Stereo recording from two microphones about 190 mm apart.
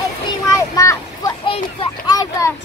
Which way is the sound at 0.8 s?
15° left (ahead or behind).